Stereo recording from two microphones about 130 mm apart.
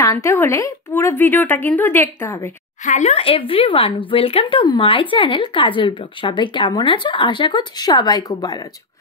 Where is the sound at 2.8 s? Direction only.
65° left (ahead or behind).